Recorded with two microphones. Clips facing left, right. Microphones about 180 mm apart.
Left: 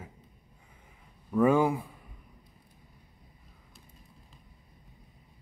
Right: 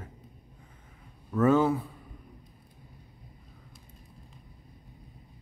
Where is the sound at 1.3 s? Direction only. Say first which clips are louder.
Right 1 dB; 10° left (ahead or behind).